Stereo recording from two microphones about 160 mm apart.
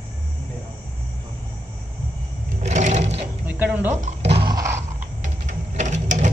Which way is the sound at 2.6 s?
45° right (ahead or behind).